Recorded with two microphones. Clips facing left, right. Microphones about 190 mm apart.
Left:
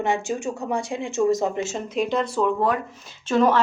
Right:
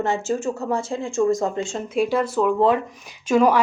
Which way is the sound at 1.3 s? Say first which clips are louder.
Even; 20° left (ahead or behind).